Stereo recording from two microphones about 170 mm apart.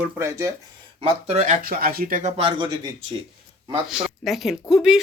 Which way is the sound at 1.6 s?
60° right (ahead or behind).